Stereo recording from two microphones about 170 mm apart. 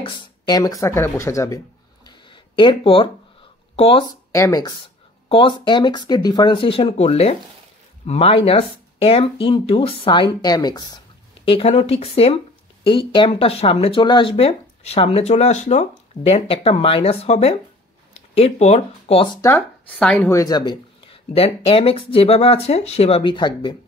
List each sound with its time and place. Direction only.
0.0 s speech: 25° left (ahead or behind)
2.0 s a sound: 30° left (ahead or behind)
3.7 s speech: 35° left (ahead or behind)
4.3 s speech: 20° left (ahead or behind)
11.4 s speech: 35° left (ahead or behind)
20.0 s a woman's voice: 5° left (ahead or behind)
20.2 s speech: 20° left (ahead or behind)